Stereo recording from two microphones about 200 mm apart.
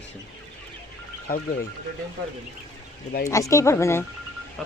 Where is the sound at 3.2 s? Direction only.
15° left (ahead or behind).